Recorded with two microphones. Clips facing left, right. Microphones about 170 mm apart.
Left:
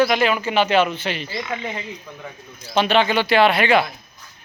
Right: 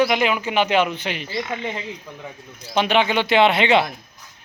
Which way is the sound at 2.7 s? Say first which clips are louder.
Left 1 dB; 15° right (ahead or behind).